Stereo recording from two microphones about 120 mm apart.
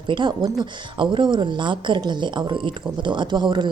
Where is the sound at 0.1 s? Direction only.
40° right (ahead or behind).